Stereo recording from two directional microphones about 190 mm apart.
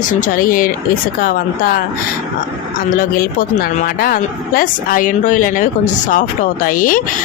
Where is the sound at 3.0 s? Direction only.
45° left (ahead or behind).